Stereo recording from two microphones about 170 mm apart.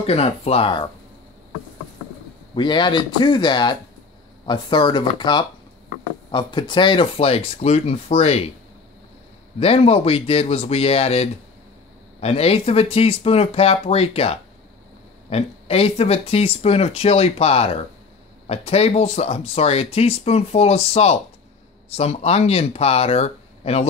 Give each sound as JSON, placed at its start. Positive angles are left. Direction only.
{"t": 0.0, "sound": "speech", "side_deg": 35}
{"t": 2.5, "sound": "speech", "side_deg": 25}
{"t": 9.6, "sound": "speech", "side_deg": 35}